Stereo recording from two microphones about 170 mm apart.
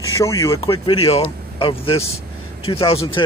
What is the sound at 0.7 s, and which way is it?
Speech, 30° left (ahead or behind).